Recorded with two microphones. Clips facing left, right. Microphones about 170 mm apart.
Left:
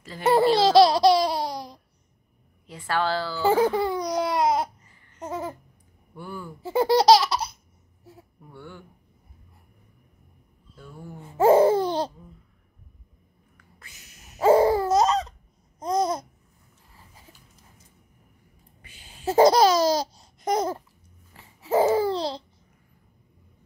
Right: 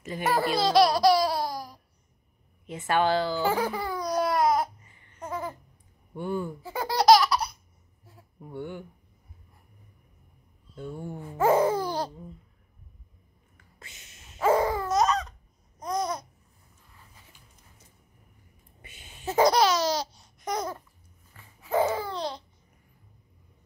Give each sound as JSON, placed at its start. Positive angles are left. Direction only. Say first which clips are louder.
{"t": 0.2, "sound": "speech", "louder": "left 7 dB", "side_deg": 25}
{"t": 2.6, "sound": "a woman's voice", "louder": "right 2 dB", "side_deg": -20}
{"t": 3.4, "sound": "laughter", "louder": "left 7 dB", "side_deg": 25}
{"t": 5.2, "sound": "babbling", "louder": "left 2 dB", "side_deg": 20}
{"t": 6.1, "sound": "a woman's voice", "louder": "right 7 dB", "side_deg": -20}
{"t": 6.6, "sound": "laughter", "louder": "left 7 dB", "side_deg": 25}
{"t": 8.4, "sound": "speech", "louder": "right 8 dB", "side_deg": -20}
{"t": 10.8, "sound": "a woman's voice", "louder": "right 6 dB", "side_deg": -25}
{"t": 11.3, "sound": "babbling", "louder": "left 5 dB", "side_deg": 30}
{"t": 13.7, "sound": "a sound", "louder": "right 1 dB", "side_deg": -25}
{"t": 14.3, "sound": "a sound", "louder": "left 6 dB", "side_deg": 30}
{"t": 15.8, "sound": "babbling", "louder": "left 5 dB", "side_deg": 25}
{"t": 18.9, "sound": "laughter", "louder": "left 6 dB", "side_deg": 30}
{"t": 21.3, "sound": "babbling", "louder": "left 5 dB", "side_deg": 25}